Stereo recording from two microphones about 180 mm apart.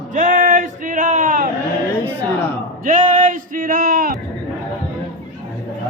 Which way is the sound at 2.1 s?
10° left (ahead or behind).